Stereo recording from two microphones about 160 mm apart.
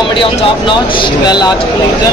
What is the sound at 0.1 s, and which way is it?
Speech, 30° left (ahead or behind).